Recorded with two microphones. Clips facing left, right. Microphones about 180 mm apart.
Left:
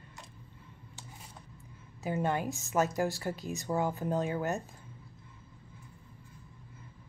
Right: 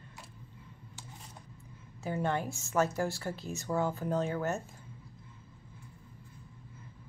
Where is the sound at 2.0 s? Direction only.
15° left (ahead or behind).